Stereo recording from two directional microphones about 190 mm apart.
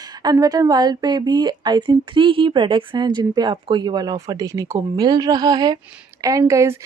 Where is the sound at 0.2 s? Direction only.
20° right (ahead or behind).